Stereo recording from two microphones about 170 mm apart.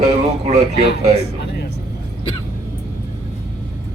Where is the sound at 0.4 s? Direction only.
40° right (ahead or behind).